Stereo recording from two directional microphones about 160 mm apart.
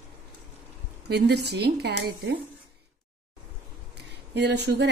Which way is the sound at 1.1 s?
90° right.